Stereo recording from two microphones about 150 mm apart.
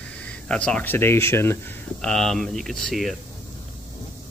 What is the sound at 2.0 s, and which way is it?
Speech, 5° left (ahead or behind).